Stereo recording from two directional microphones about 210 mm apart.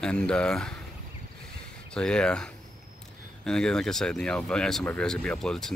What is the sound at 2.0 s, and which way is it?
Speech, 5° left (ahead or behind).